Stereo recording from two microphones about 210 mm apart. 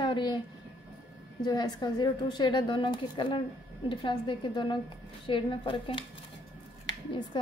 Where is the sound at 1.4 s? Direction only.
20° left (ahead or behind).